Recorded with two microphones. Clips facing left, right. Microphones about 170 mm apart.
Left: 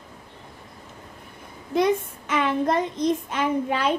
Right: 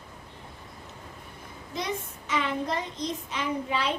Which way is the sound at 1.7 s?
55° left (ahead or behind).